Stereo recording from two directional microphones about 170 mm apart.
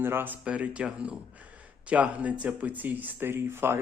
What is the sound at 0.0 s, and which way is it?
Speech, 15° right (ahead or behind).